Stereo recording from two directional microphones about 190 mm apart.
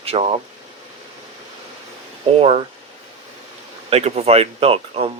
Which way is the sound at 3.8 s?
35° right (ahead or behind).